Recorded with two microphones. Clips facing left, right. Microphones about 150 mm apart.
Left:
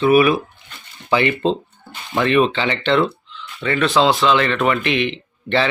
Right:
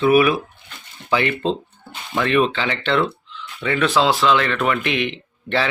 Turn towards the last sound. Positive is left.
turn(degrees=-5)  # may be behind; listen again after turning